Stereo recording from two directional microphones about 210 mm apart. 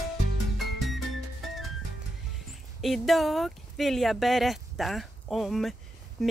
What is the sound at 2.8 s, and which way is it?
Speech, centre (ahead or behind).